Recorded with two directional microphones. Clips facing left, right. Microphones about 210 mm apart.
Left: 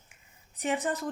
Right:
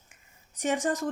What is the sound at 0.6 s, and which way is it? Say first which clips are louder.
Speech: right 2 dB; 45° right (ahead or behind).